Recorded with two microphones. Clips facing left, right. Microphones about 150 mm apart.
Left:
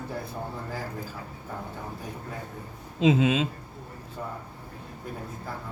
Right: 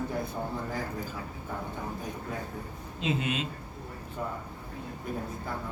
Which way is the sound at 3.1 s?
90° left.